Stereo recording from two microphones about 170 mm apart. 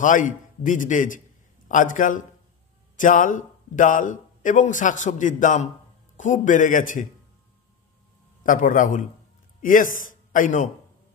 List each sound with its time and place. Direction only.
0.0 s speech: 50° left (ahead or behind)
8.5 s a man's voice: 50° left (ahead or behind)